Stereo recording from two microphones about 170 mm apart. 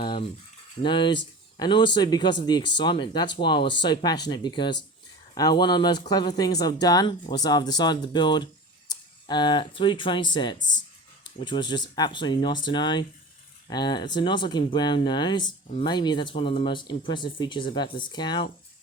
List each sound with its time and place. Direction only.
0.0 s rattle: 30° left (ahead or behind)
0.8 s speech: 30° left (ahead or behind)